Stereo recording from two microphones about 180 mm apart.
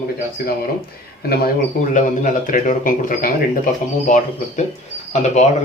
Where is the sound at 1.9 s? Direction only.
45° left (ahead or behind).